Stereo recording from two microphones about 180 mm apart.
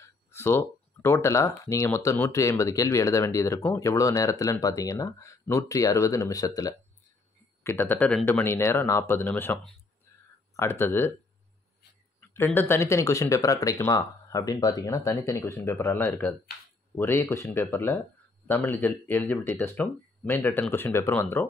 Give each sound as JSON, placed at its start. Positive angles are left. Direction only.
{"t": 0.0, "sound": "a sound", "side_deg": 15}
{"t": 1.7, "sound": "speech", "side_deg": 15}
{"t": 12.4, "sound": "speech", "side_deg": 10}